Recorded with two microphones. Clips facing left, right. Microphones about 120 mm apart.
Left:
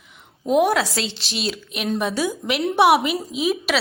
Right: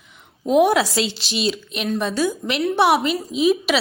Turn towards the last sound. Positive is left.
turn(degrees=5)  # may be behind; listen again after turning